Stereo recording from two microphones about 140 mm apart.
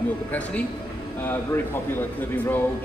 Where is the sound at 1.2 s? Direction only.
15° left (ahead or behind).